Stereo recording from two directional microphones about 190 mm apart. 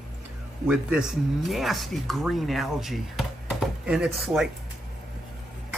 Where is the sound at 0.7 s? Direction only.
5° right (ahead or behind).